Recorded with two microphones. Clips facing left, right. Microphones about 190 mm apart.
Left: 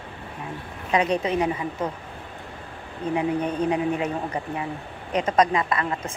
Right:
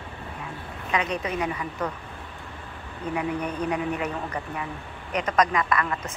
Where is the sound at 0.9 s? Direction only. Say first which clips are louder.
Left 5 dB; 30° left (ahead or behind).